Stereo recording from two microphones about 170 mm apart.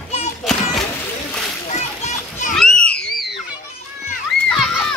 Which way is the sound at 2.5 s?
Centre (ahead or behind).